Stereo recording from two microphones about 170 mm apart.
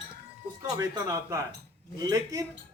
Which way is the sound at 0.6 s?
20° right (ahead or behind).